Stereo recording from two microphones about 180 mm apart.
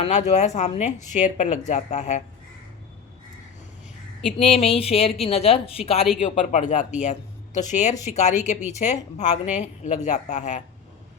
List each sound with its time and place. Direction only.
0.0 s a woman's voice: 40° left (ahead or behind)
4.4 s a woman's voice: 35° left (ahead or behind)